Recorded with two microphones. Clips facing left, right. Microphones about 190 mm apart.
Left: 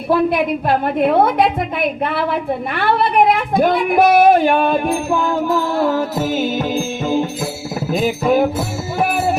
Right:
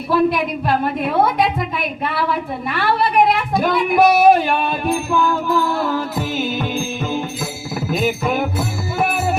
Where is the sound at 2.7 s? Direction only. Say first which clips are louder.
Left 1 dB; 55° left (ahead or behind).